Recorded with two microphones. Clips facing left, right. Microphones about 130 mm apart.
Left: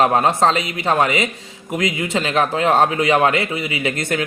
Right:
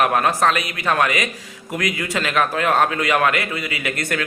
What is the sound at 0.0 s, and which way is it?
A man's voice, 25° left (ahead or behind).